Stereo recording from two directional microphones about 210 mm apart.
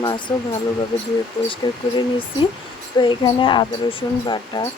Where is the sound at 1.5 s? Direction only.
20° left (ahead or behind).